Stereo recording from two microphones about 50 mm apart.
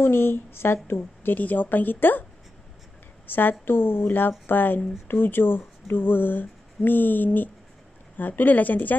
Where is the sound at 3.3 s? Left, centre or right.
Left.